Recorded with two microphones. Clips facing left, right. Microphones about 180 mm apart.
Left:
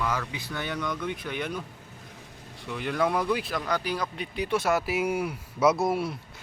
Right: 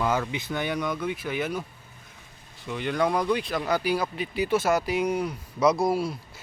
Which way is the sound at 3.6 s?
10° right (ahead or behind).